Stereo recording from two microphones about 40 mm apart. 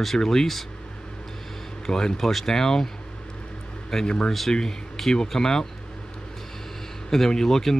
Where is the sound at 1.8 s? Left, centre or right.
Centre.